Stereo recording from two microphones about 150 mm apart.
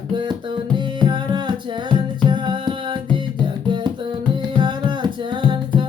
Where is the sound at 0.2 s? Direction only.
30° right (ahead or behind).